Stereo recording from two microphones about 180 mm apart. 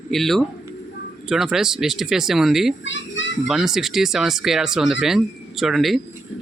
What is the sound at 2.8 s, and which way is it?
Speech, 90° left.